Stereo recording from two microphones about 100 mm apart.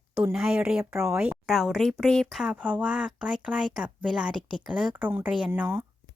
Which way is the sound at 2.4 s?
15° right (ahead or behind).